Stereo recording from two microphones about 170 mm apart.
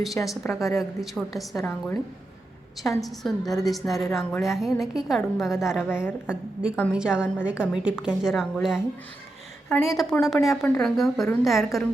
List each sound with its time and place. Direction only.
0.0 s a woman's voice: centre (ahead or behind)
1.5 s a woman's voice: 15° left (ahead or behind)
3.0 s a woman's voice: centre (ahead or behind)